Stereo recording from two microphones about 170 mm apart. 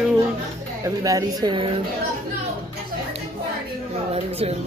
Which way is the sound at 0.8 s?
20° right (ahead or behind).